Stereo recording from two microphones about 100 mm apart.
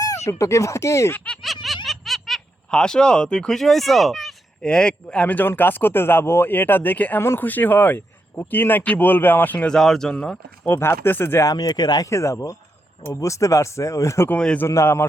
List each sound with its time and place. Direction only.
0.3 s speech: 30° left (ahead or behind)
1.6 s speech: centre (ahead or behind)
10.7 s speech: 25° left (ahead or behind)
11.4 s speech: 40° left (ahead or behind)
14.3 s a man's voice: 10° left (ahead or behind)
14.7 s speech: 25° left (ahead or behind)